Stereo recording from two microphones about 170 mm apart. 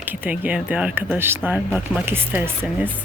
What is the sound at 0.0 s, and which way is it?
A woman's voice, 10° right (ahead or behind).